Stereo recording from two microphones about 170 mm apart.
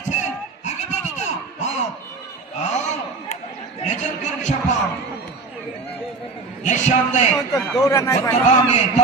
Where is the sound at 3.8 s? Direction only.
45° left (ahead or behind).